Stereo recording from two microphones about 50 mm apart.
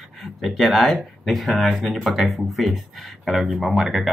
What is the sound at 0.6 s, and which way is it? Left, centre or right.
Speech, centre.